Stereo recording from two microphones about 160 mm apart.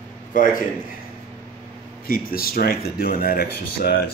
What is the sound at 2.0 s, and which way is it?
Speech, 65° left (ahead or behind).